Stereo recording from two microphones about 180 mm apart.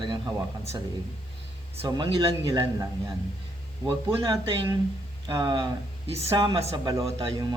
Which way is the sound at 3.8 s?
25° right (ahead or behind).